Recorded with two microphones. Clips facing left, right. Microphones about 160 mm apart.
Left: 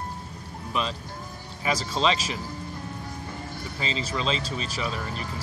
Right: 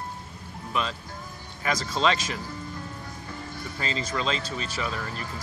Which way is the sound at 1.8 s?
30° left (ahead or behind).